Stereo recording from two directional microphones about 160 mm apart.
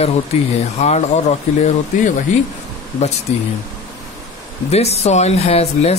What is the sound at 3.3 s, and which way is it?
Speech, 40° left (ahead or behind).